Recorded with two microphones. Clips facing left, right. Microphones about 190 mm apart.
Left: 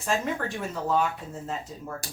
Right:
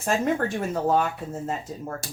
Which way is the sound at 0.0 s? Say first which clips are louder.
Right 4 dB; 50° right (ahead or behind).